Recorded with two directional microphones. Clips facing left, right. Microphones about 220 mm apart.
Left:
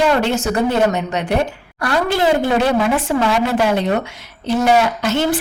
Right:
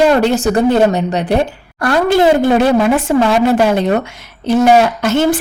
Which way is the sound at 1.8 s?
50° right (ahead or behind).